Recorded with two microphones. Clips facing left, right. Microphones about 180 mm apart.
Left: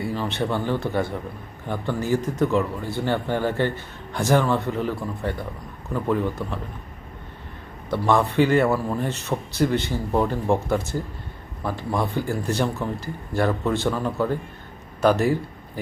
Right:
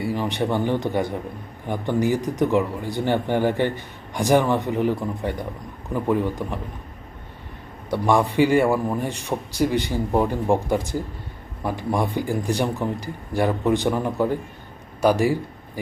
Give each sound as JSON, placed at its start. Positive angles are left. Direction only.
{"t": 0.1, "sound": "speech", "side_deg": -15}
{"t": 7.9, "sound": "a man's voice", "side_deg": -10}